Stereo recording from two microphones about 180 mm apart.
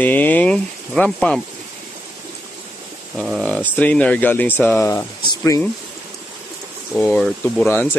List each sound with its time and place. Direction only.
0.0 s speech: 10° left (ahead or behind)
3.2 s speech: centre (ahead or behind); by 5.6 s 15° left (ahead or behind)
6.9 s speech: 5° left (ahead or behind)